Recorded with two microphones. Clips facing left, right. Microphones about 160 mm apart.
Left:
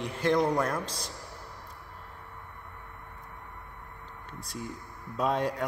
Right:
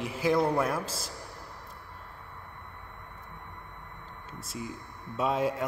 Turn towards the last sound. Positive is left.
turn(degrees=0)  # may be behind; listen again after turning